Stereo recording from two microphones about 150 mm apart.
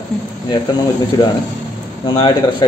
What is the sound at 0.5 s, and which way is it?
Speech, 30° left (ahead or behind).